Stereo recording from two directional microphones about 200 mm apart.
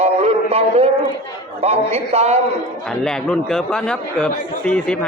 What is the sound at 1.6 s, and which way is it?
Speech, 30° right (ahead or behind).